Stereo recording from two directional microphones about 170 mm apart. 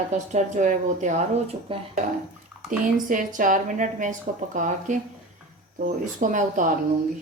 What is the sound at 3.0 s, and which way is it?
A woman's voice, 50° right (ahead or behind).